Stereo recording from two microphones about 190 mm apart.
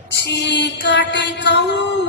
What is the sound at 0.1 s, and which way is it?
Mantra, 65° left (ahead or behind).